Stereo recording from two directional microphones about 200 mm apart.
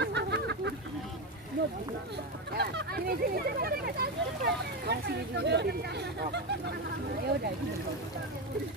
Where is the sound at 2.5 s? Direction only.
55° right (ahead or behind).